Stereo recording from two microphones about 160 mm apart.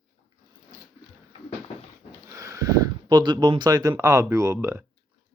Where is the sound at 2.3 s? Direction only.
20° right (ahead or behind).